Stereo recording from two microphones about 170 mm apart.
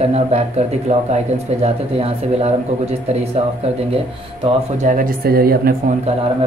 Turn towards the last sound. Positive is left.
turn(degrees=-35)  # may be behind; listen again after turning